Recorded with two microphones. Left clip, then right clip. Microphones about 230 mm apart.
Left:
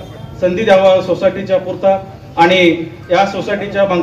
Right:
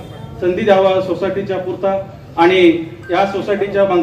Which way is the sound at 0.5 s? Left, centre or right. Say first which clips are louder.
Left 3 dB; left.